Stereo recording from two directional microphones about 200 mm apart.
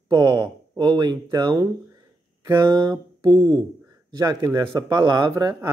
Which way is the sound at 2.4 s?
15° right (ahead or behind).